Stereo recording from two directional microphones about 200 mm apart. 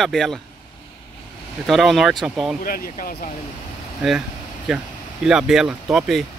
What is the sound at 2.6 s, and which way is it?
Speech, 45° left (ahead or behind).